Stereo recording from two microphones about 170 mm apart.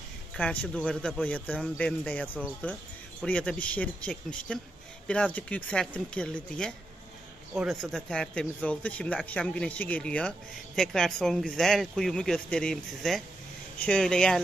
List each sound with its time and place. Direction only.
0.4 s speech: 10° left (ahead or behind)